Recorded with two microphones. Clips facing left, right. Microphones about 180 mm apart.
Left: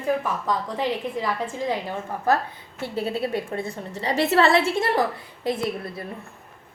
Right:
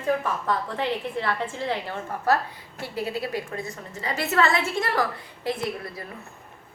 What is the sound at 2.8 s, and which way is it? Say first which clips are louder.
A woman's voice: left 3 dB; 25° left (ahead or behind).